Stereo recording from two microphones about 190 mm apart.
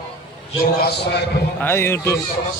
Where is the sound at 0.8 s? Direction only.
60° left (ahead or behind).